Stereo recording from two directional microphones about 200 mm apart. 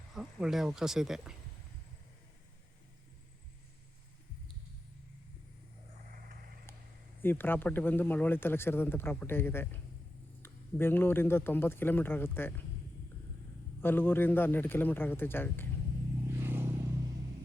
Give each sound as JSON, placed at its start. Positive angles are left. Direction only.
{"t": 0.1, "sound": "speech", "side_deg": -5}
{"t": 6.1, "sound": "vehicle", "side_deg": -45}
{"t": 7.2, "sound": "speech", "side_deg": 10}
{"t": 13.8, "sound": "speech", "side_deg": 10}
{"t": 16.4, "sound": "vehicle", "side_deg": -10}